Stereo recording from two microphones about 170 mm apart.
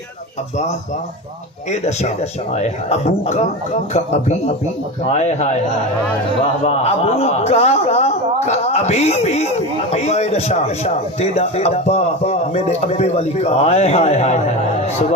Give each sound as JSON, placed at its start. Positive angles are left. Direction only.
{"t": 1.7, "sound": "a man's voice", "side_deg": 40}